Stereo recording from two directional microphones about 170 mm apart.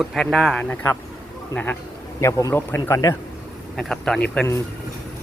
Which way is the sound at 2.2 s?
15° left (ahead or behind).